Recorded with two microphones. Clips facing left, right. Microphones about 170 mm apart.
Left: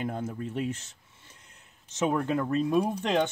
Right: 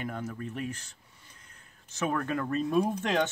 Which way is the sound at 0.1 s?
30° left (ahead or behind).